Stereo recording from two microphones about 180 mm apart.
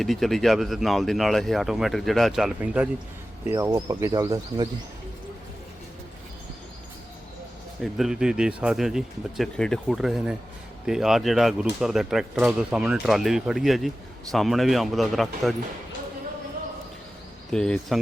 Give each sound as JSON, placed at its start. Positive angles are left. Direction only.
{"t": 0.0, "sound": "speech", "side_deg": 0}
{"t": 3.5, "sound": "speech", "side_deg": -20}
{"t": 7.8, "sound": "speech", "side_deg": 0}
{"t": 17.5, "sound": "speech", "side_deg": 5}